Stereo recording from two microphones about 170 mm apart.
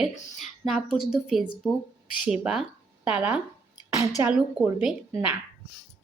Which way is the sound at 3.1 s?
5° right (ahead or behind).